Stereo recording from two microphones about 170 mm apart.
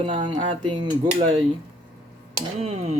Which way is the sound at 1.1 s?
35° right (ahead or behind).